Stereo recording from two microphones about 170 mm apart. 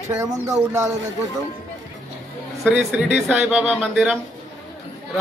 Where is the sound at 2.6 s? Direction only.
10° right (ahead or behind).